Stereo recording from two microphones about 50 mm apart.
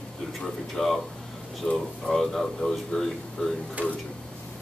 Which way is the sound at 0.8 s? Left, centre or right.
Centre.